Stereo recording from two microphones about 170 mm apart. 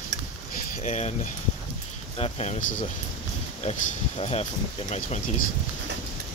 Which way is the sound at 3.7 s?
40° left (ahead or behind).